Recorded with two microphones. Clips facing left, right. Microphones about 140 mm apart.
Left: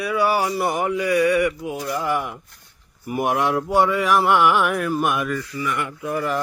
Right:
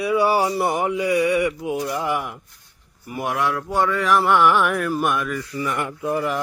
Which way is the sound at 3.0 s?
20° left (ahead or behind).